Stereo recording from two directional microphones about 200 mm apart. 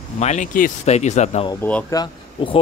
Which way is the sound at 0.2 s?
35° left (ahead or behind).